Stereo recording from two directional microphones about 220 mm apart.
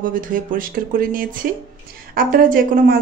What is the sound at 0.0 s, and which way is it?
Speech, 40° right (ahead or behind).